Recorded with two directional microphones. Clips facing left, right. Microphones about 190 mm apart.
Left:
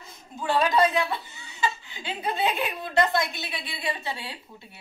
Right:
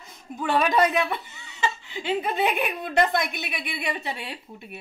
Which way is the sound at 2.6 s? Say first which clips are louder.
Right 1 dB; 20° right (ahead or behind).